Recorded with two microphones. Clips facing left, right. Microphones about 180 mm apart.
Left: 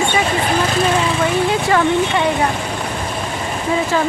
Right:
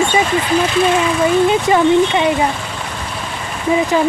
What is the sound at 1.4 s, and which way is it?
Speech, 20° right (ahead or behind).